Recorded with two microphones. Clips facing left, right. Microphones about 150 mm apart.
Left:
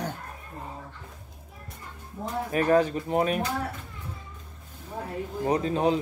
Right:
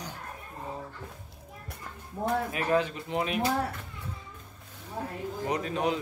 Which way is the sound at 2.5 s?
40° left (ahead or behind).